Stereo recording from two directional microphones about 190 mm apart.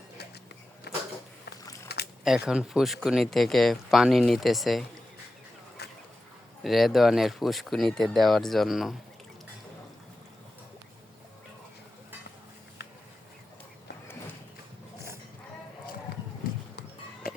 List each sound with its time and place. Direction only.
0.9 s a sound: 60° left (ahead or behind)
2.2 s speech: centre (ahead or behind)
6.6 s speech: centre (ahead or behind)